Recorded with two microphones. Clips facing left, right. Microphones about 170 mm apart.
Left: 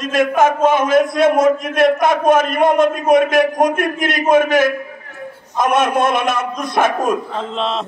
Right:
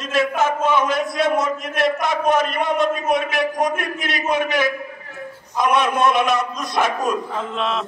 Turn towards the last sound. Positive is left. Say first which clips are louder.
# left 2 dB
turn(degrees=30)  # may be behind; listen again after turning